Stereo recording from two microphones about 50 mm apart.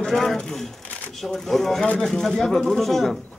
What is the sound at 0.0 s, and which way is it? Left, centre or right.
A man's voice, centre.